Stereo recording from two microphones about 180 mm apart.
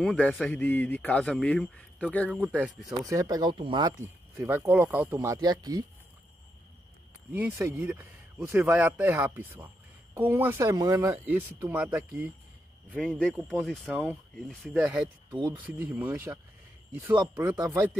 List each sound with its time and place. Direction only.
0.0 s a man's voice: 5° left (ahead or behind)
3.1 s speech: 20° right (ahead or behind)
7.3 s speech: 10° right (ahead or behind)
13.0 s speech: 5° left (ahead or behind); by 17.7 s 15° right (ahead or behind)